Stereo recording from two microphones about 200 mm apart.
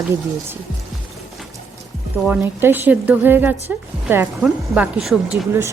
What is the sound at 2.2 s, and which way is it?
Speech, 10° right (ahead or behind).